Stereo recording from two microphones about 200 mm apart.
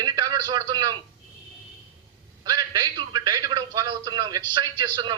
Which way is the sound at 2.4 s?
20° right (ahead or behind).